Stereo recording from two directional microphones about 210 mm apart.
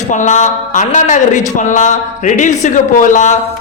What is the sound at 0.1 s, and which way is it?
Speech, 35° left (ahead or behind).